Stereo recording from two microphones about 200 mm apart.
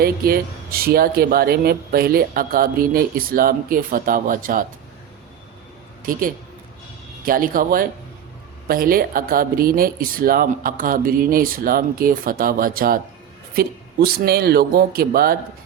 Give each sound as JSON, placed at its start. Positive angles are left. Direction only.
{"t": 0.0, "sound": "speech", "side_deg": -50}
{"t": 6.0, "sound": "a man's voice", "side_deg": -45}